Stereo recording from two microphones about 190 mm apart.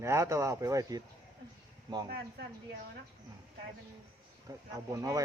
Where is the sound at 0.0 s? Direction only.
15° right (ahead or behind).